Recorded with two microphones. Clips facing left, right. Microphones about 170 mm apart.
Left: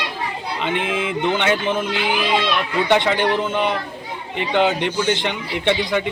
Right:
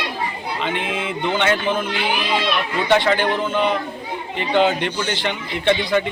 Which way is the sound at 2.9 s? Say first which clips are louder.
Right 1 dB; 15° left (ahead or behind).